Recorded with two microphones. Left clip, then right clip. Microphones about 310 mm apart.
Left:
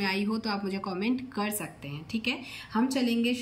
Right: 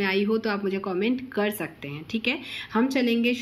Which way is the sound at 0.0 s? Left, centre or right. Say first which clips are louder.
Right 6 dB; centre.